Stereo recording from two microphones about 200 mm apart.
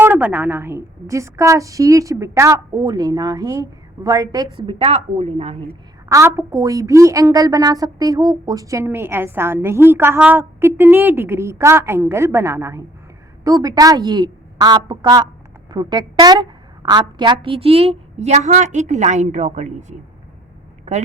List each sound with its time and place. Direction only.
0.0 s a woman's voice: 10° right (ahead or behind); by 5.6 s 30° right (ahead or behind)
6.1 s a woman's voice: 15° right (ahead or behind); by 20.0 s 35° right (ahead or behind)